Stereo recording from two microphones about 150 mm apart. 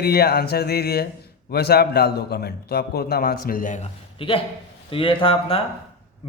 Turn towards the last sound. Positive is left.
turn(degrees=35)  # may be behind; listen again after turning